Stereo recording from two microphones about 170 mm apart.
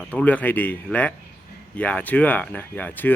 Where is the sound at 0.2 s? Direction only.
10° left (ahead or behind).